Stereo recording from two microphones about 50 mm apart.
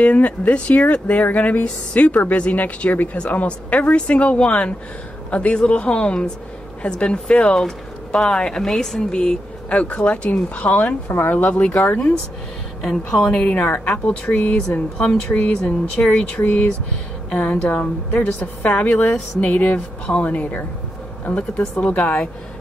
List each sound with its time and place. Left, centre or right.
0.0 s speech: left
12.8 s a woman's voice: centre
13.4 s speech: left